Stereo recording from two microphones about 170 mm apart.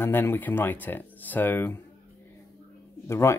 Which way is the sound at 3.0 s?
15° left (ahead or behind).